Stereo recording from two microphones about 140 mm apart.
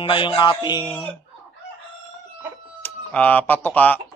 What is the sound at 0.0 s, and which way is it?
Music, 35° left (ahead or behind).